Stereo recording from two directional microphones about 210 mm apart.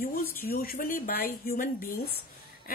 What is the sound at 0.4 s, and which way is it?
A woman's voice, 45° left (ahead or behind).